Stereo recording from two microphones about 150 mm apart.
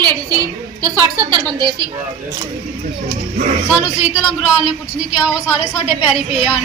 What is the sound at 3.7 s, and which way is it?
A woman's voice, 10° right (ahead or behind).